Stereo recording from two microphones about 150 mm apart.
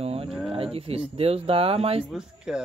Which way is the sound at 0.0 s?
40° right (ahead or behind).